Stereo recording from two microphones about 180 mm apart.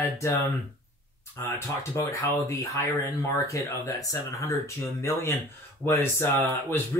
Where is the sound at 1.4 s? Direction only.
20° left (ahead or behind).